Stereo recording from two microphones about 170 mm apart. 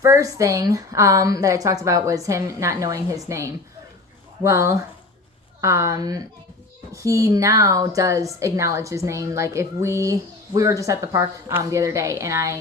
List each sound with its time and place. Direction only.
0.0 s a woman's voice: 15° right (ahead or behind)